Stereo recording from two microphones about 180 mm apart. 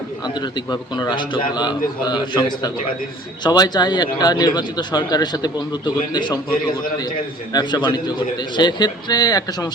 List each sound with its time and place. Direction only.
0.3 s speech: 25° left (ahead or behind)
7.5 s speech: 25° left (ahead or behind)